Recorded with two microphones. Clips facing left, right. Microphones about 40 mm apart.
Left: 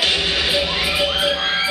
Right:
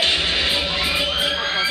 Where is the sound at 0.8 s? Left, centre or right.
Centre.